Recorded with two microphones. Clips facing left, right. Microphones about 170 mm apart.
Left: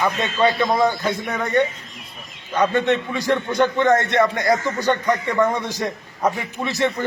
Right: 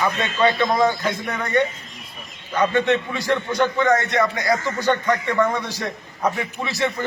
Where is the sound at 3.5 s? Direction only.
20° left (ahead or behind).